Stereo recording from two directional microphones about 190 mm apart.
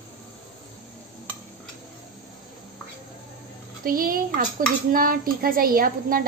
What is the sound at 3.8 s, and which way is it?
A woman's voice, 50° right (ahead or behind).